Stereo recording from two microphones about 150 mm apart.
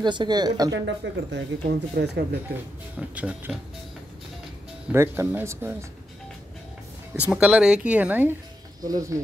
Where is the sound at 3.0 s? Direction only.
10° right (ahead or behind).